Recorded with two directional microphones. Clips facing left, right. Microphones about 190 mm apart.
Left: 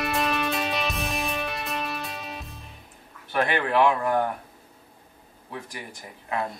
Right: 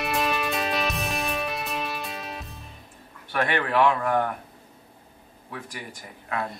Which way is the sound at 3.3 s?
30° left (ahead or behind).